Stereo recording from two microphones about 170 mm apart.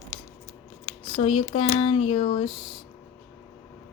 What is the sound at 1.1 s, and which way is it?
Speech, 35° left (ahead or behind).